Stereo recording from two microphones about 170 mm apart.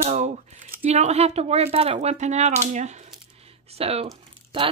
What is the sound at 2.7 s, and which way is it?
Coin, 40° right (ahead or behind).